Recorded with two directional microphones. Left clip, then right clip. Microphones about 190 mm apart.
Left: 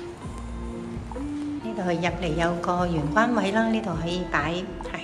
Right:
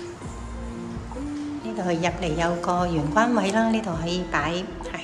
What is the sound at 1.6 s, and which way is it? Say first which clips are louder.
A woman's voice: right 2 dB; 5° right (ahead or behind).